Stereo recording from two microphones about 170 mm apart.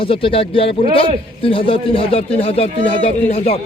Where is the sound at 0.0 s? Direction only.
30° left (ahead or behind).